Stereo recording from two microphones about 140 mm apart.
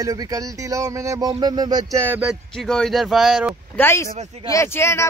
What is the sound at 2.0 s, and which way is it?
Speech, 10° right (ahead or behind).